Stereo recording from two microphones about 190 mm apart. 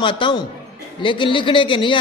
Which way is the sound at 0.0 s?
25° left (ahead or behind).